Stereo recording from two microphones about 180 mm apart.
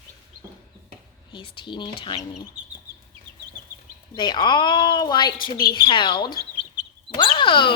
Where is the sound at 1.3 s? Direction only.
25° left (ahead or behind).